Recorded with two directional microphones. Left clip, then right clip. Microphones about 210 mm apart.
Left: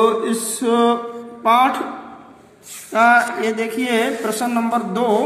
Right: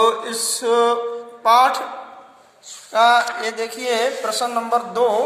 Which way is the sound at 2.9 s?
10° right (ahead or behind).